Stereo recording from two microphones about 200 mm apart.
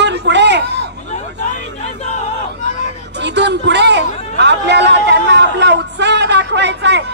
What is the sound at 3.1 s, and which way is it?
A man's voice, 60° right (ahead or behind).